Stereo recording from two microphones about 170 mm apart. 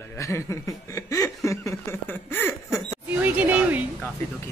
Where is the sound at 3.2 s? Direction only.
10° right (ahead or behind).